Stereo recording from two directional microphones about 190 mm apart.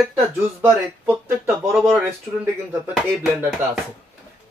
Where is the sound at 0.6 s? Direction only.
15° right (ahead or behind).